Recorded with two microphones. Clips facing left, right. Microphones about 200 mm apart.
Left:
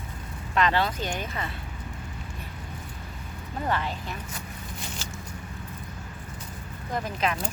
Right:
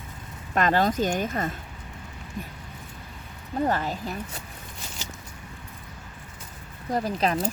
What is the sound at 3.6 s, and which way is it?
Speech, 40° right (ahead or behind).